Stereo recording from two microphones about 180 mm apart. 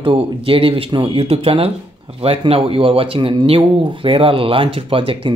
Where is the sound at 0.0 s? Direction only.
30° right (ahead or behind).